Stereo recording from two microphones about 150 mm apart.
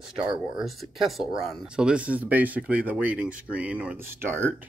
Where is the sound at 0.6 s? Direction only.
Centre (ahead or behind).